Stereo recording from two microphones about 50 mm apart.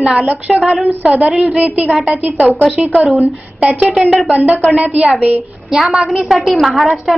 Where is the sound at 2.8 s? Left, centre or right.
Centre.